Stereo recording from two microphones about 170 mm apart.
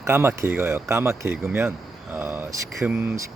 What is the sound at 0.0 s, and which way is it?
Speech, 15° right (ahead or behind).